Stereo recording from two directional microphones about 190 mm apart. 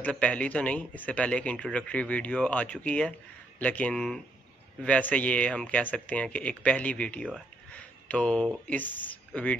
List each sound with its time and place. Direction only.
0.0 s speech: 5° left (ahead or behind)